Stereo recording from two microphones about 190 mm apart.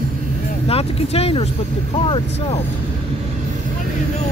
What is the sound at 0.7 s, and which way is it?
Speech, 30° left (ahead or behind).